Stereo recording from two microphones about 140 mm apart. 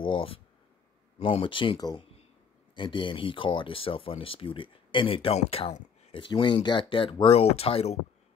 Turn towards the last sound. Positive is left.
turn(degrees=45)  # may be behind; listen again after turning